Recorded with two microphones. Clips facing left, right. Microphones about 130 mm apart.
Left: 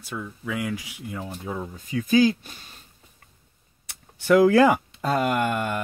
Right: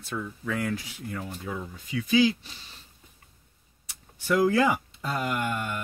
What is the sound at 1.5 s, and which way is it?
Speech, 40° left (ahead or behind).